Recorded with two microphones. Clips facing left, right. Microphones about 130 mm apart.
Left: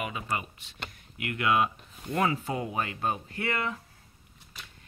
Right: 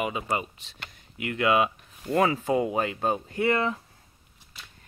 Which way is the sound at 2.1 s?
25° right (ahead or behind).